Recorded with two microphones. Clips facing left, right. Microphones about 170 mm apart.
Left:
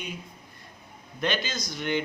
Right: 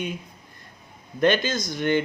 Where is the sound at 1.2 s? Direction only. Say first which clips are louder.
Right 8 dB; 50° right (ahead or behind).